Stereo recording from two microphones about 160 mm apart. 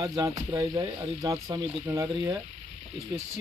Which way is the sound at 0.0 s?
25° right (ahead or behind).